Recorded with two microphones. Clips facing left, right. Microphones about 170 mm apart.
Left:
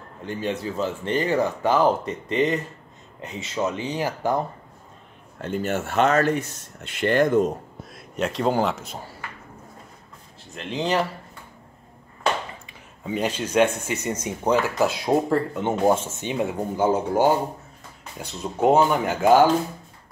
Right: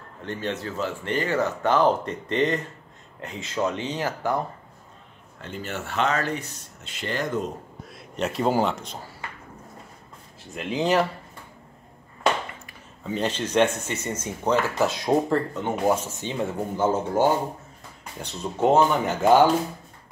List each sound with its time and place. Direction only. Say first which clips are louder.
0.2 s speech: left 2 dB; 10° left (ahead or behind)
5.4 s speech: left 7 dB; 50° left (ahead or behind)
8.2 s speech: left 1 dB; centre (ahead or behind)
10.5 s speech: right 2 dB; 5° right (ahead or behind)
13.0 s speech: left 1 dB; 10° left (ahead or behind)
15.8 s speech: left 3 dB; 25° left (ahead or behind)
18.6 s speech: left 1 dB; 10° left (ahead or behind)